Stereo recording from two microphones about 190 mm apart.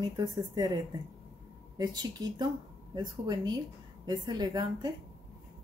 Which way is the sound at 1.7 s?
20° right (ahead or behind).